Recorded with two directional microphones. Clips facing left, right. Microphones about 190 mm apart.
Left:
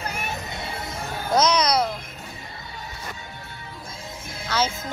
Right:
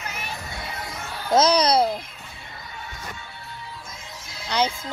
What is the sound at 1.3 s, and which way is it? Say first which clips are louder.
Speech: right 2 dB; 30° right (ahead or behind).